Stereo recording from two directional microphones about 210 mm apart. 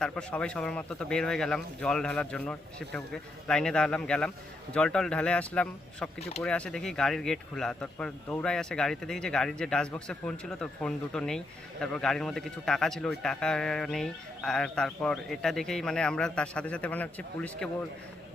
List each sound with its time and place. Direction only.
0.0 s speech: 5° left (ahead or behind)
6.1 s speech: 30° left (ahead or behind)
6.4 s speech: 5° left (ahead or behind)